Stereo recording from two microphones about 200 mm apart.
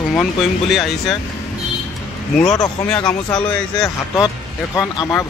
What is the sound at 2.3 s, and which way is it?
Speech, 5° left (ahead or behind).